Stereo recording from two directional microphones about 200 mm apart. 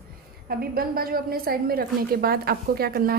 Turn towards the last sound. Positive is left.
turn(degrees=-50)  # may be behind; listen again after turning